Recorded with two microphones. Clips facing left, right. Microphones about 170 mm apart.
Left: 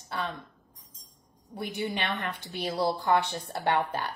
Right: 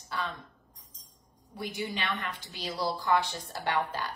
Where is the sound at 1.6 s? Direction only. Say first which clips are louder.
Left 3 dB; 60° left (ahead or behind).